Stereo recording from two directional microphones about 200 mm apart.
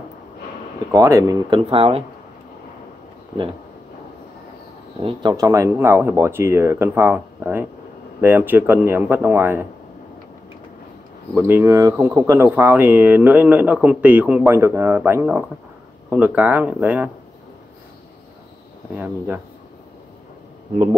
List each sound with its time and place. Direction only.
0.9 s speech: 15° right (ahead or behind)
5.0 s speech: 20° right (ahead or behind)
11.3 s speech: 10° right (ahead or behind)
18.9 s speech: 10° right (ahead or behind)